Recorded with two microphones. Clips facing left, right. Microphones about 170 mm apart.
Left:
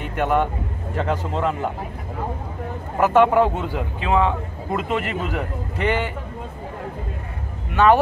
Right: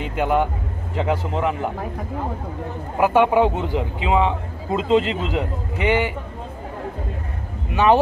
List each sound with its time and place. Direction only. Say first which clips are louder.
0.1 s a man's voice: even; 15° right (ahead or behind)
3.0 s a man's voice: even; 15° right (ahead or behind)
7.7 s speech: even; 15° right (ahead or behind)